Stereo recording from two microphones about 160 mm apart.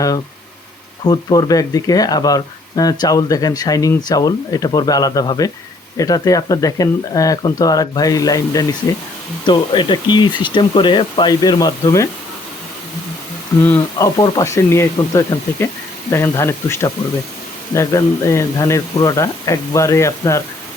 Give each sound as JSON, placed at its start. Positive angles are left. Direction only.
{"t": 1.0, "sound": "speech", "side_deg": 25}
{"t": 13.6, "sound": "speech", "side_deg": 10}
{"t": 14.2, "sound": "speech", "side_deg": 20}